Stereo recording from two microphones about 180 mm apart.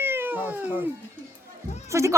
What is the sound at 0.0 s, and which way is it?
Cat, 10° right (ahead or behind).